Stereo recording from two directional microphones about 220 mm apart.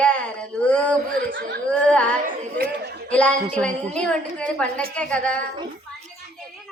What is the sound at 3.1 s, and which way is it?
Speech, 5° left (ahead or behind).